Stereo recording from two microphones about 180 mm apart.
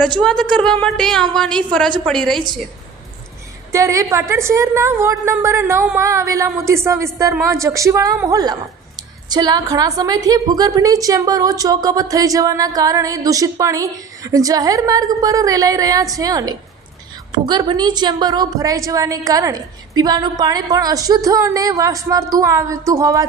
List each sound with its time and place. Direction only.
0.2 s a woman's voice: 5° left (ahead or behind)
3.7 s a woman's voice: 15° right (ahead or behind)